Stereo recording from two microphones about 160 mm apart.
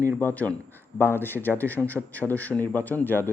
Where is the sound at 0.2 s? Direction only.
10° left (ahead or behind).